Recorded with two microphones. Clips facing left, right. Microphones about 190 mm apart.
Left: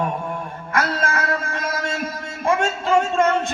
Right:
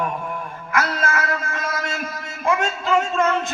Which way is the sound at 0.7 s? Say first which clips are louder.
Even; 30° left (ahead or behind).